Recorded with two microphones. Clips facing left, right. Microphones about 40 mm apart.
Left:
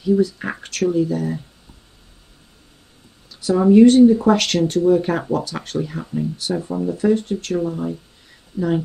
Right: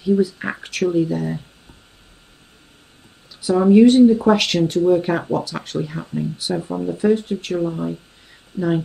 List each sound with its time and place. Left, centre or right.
0.0 s speech: centre
3.3 s speech: centre